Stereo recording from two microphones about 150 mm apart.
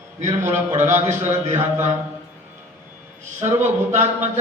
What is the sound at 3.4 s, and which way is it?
Speech, 50° right (ahead or behind).